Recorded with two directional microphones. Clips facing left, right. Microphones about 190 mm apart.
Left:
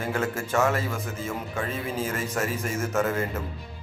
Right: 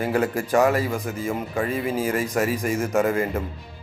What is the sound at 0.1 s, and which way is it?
Speech, 15° right (ahead or behind).